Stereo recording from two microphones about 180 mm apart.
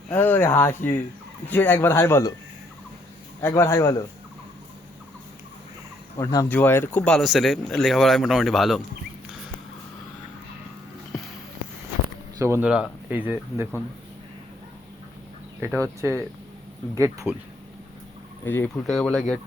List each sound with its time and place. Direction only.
0.1 s speech: 10° left (ahead or behind)
3.4 s speech: 15° left (ahead or behind)
6.1 s speech: 20° left (ahead or behind); by 8.8 s centre (ahead or behind)
12.4 s speech: 15° right (ahead or behind)
15.6 s speech: 15° right (ahead or behind)
18.4 s speech: 10° left (ahead or behind)